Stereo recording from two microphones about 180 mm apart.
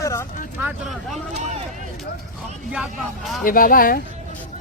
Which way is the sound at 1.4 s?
40° right (ahead or behind).